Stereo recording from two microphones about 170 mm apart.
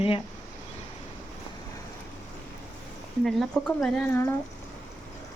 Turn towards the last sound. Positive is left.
turn(degrees=5)  # may be behind; listen again after turning